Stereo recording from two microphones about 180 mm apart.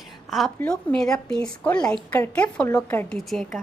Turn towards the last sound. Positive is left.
turn(degrees=0)  # may be behind; listen again after turning